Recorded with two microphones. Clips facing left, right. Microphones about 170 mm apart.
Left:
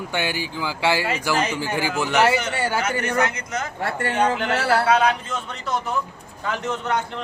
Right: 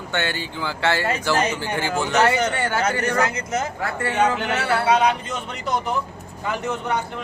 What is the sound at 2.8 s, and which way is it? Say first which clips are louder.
Speech: right 3 dB; 30° right (ahead or behind).